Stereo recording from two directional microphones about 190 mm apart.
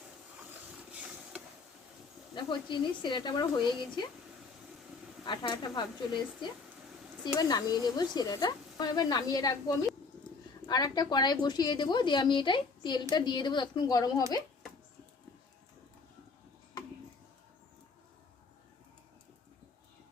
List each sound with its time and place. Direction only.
0.8 s a sound: 5° right (ahead or behind)
2.3 s speech: 25° left (ahead or behind)
5.2 s speech: 25° left (ahead or behind)